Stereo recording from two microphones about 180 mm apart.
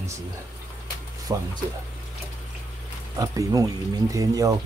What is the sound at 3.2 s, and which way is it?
Speech, 20° right (ahead or behind).